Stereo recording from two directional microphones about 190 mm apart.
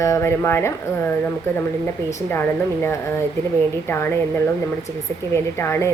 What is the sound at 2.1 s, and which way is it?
A woman's voice, 10° left (ahead or behind).